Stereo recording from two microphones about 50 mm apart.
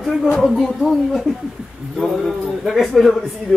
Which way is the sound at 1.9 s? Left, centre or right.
Centre.